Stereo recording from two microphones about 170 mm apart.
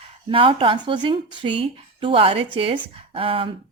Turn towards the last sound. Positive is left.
turn(degrees=-35)  # may be behind; listen again after turning